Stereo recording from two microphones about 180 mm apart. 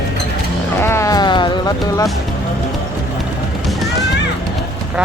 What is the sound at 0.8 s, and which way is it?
Music, 15° left (ahead or behind).